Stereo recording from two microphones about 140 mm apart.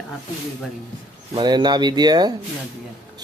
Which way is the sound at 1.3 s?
30° right (ahead or behind).